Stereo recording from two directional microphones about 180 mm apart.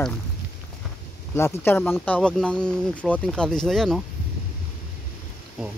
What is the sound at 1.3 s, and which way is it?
Speech, 15° left (ahead or behind).